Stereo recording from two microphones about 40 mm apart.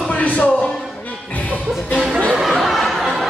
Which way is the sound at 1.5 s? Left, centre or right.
Left.